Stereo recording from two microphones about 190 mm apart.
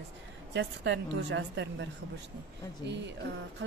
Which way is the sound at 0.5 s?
70° right (ahead or behind).